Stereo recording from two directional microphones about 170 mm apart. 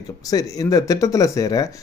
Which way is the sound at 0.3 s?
20° left (ahead or behind).